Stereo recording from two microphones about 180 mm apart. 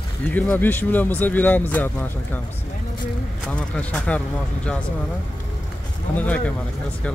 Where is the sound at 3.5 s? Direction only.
5° left (ahead or behind).